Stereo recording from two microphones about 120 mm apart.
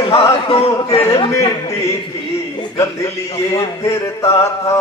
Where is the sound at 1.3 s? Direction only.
25° left (ahead or behind).